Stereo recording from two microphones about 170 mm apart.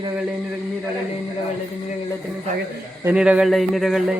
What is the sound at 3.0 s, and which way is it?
Speech, 5° right (ahead or behind).